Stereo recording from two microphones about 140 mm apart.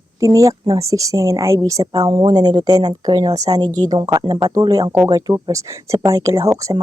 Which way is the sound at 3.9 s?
25° right (ahead or behind).